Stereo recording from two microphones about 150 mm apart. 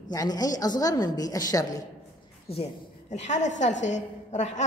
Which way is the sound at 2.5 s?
45° left (ahead or behind).